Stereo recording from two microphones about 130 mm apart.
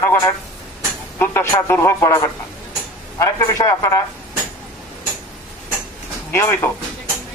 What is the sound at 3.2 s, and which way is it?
Speech, 25° left (ahead or behind).